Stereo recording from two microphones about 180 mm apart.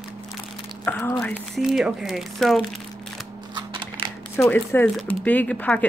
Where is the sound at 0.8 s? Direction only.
5° left (ahead or behind).